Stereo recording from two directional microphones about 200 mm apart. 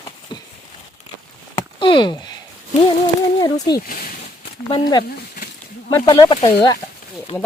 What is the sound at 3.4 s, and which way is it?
Speech, 20° left (ahead or behind).